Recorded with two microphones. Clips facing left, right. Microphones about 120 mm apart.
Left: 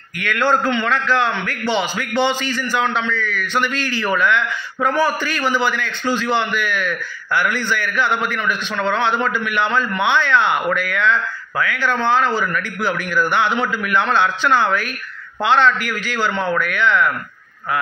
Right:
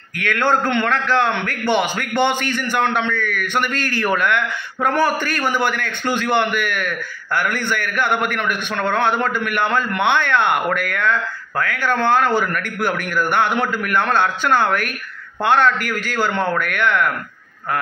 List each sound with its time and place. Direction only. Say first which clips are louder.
0.2 s a man's voice: even; 55° right (ahead or behind)